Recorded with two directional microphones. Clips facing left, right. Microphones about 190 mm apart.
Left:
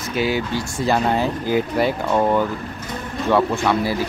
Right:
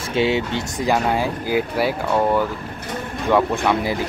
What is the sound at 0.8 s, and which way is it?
Speech, 10° right (ahead or behind).